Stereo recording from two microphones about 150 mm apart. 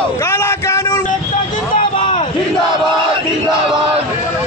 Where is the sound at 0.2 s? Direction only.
15° left (ahead or behind).